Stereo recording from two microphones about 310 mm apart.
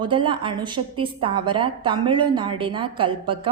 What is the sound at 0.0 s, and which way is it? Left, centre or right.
A woman's voice, centre.